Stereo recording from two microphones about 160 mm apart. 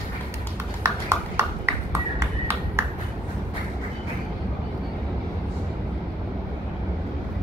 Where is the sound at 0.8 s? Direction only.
15° right (ahead or behind).